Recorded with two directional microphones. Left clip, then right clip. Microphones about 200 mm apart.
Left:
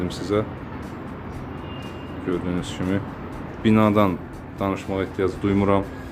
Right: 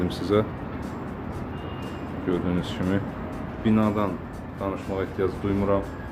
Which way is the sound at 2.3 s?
10° left (ahead or behind).